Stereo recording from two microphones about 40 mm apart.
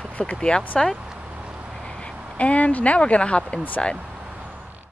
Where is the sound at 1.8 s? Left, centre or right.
Centre.